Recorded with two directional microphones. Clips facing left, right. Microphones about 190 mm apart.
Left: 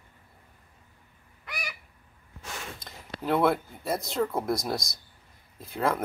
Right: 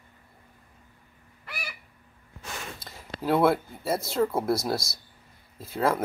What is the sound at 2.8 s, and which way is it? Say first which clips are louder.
Speech: right 3 dB; 5° right (ahead or behind).